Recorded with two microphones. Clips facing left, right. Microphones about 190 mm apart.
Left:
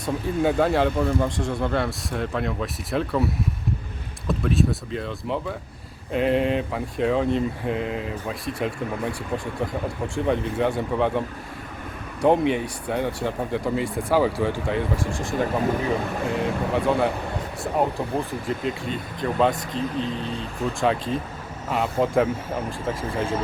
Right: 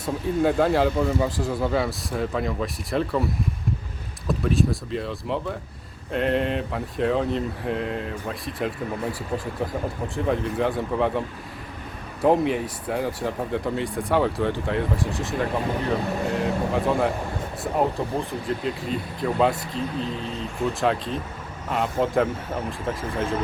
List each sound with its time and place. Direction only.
0.0 s speech: centre (ahead or behind)
4.3 s speech: centre (ahead or behind)
12.2 s speech: centre (ahead or behind)
18.3 s speech: centre (ahead or behind)